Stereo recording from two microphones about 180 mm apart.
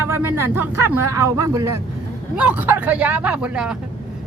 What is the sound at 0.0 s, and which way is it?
A man's voice, 15° right (ahead or behind).